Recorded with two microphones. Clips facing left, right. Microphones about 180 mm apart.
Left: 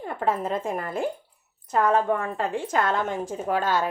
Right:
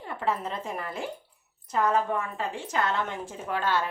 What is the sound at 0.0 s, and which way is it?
A woman's voice, 45° left (ahead or behind).